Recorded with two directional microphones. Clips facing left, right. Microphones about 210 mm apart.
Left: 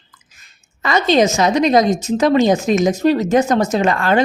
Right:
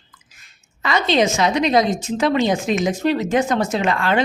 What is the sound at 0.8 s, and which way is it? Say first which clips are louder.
A woman's voice: left 4 dB; 45° left (ahead or behind).